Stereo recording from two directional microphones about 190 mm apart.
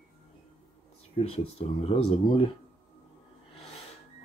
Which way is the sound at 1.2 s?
30° left (ahead or behind).